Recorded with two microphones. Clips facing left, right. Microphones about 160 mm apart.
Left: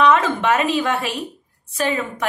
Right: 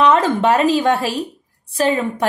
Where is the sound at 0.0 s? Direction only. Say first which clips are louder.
Right 2 dB; 35° right (ahead or behind).